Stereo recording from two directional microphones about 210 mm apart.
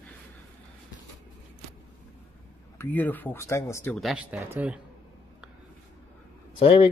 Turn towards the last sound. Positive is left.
turn(degrees=25)  # may be behind; listen again after turning